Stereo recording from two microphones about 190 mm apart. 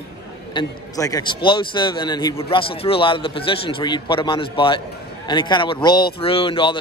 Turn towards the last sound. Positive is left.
turn(degrees=25)  # may be behind; listen again after turning